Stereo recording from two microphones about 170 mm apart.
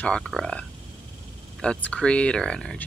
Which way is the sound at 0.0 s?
5° left (ahead or behind).